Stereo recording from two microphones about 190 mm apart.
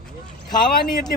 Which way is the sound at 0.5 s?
20° left (ahead or behind).